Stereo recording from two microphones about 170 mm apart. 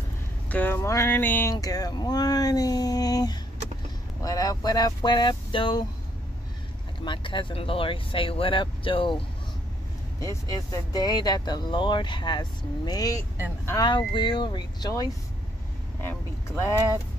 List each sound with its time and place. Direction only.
0.5 s speech: 10° left (ahead or behind); by 5.9 s 25° left (ahead or behind)
7.1 s speech: 30° left (ahead or behind)
10.2 s speech: 20° left (ahead or behind)